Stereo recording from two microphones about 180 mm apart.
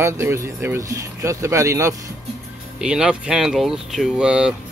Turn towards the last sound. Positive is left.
turn(degrees=-5)  # may be behind; listen again after turning